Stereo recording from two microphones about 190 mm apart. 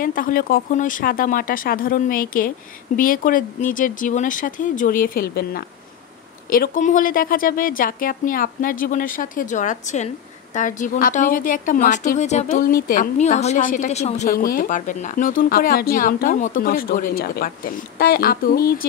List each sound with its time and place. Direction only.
0.0 s a woman's voice: 45° left (ahead or behind)